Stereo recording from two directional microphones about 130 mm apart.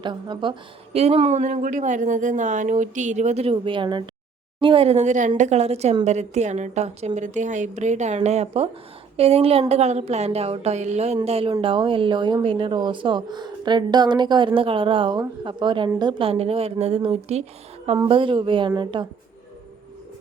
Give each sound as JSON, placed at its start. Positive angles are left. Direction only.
{"t": 0.0, "sound": "speech", "side_deg": -35}
{"t": 0.9, "sound": "a woman's voice", "side_deg": -50}
{"t": 5.4, "sound": "a woman's voice", "side_deg": -55}
{"t": 11.3, "sound": "a woman's voice", "side_deg": -45}
{"t": 18.1, "sound": "speech", "side_deg": -40}